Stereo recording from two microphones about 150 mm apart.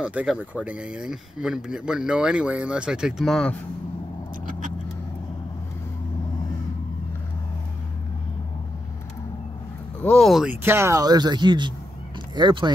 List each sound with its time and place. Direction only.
0.0 s speech: 5° right (ahead or behind)
10.0 s speech: 5° left (ahead or behind)
10.6 s speech: 15° right (ahead or behind)